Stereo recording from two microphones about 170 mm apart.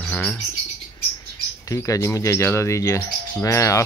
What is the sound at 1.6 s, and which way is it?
Speech, 20° left (ahead or behind).